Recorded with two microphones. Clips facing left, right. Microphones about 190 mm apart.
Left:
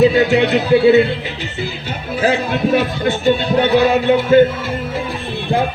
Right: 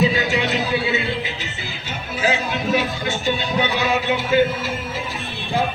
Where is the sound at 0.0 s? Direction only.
60° left (ahead or behind).